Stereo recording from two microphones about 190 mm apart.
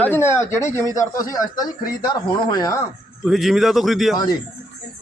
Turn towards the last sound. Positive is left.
turn(degrees=0)  # may be behind; listen again after turning